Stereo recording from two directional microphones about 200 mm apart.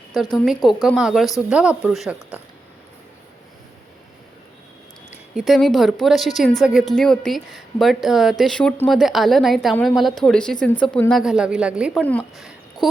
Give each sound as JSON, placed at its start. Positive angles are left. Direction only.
{"t": 0.1, "sound": "a woman's voice", "side_deg": 0}
{"t": 5.1, "sound": "a woman's voice", "side_deg": -5}